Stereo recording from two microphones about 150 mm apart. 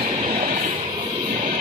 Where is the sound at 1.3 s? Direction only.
50° right (ahead or behind).